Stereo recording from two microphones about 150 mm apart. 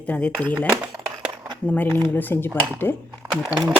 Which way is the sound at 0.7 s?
20° right (ahead or behind).